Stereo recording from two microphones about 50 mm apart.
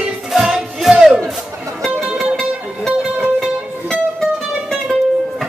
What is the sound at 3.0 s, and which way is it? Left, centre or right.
Music, centre.